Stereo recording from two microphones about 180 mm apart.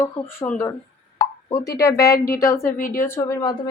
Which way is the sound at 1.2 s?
20° left (ahead or behind).